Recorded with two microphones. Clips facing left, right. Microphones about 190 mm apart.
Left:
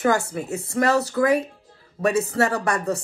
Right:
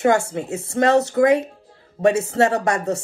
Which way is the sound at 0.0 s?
30° right (ahead or behind).